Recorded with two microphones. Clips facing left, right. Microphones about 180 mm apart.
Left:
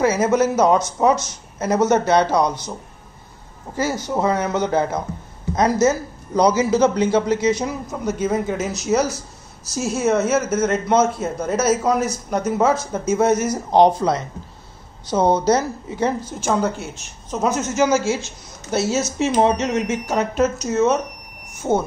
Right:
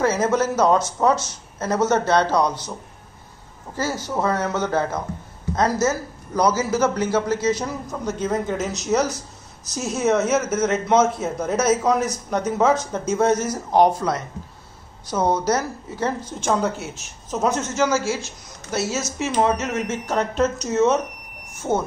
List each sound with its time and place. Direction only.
0.0 s a man's voice: 10° left (ahead or behind)
3.7 s a man's voice: 15° left (ahead or behind)
13.7 s a woman's voice: 20° left (ahead or behind); by 17.6 s centre (ahead or behind)
17.7 s a woman's voice: 20° left (ahead or behind); by 21.0 s centre (ahead or behind)